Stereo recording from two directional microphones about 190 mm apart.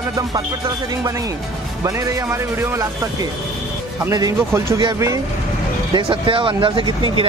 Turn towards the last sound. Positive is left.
turn(degrees=-25)  # may be behind; listen again after turning